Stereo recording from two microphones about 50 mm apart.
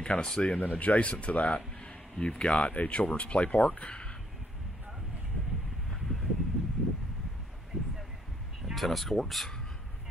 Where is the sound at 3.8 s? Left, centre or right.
Left.